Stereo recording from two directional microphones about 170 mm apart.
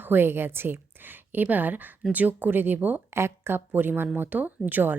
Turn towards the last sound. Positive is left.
turn(degrees=-10)  # may be behind; listen again after turning